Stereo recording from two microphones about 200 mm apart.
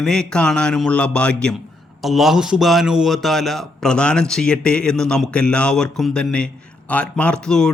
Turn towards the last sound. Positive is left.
turn(degrees=5)  # may be behind; listen again after turning